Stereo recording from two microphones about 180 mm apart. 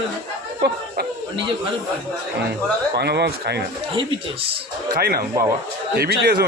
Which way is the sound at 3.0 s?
65° right (ahead or behind).